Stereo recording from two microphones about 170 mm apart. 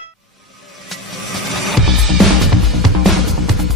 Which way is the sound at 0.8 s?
Centre (ahead or behind).